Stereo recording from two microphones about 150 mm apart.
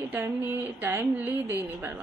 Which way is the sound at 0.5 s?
15° right (ahead or behind).